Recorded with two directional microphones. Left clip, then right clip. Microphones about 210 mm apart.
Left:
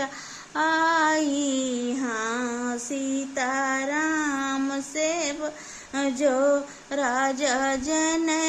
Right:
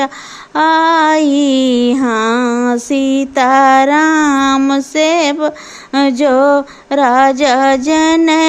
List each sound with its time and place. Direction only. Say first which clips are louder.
0.5 s female singing: right 12 dB; 35° right (ahead or behind)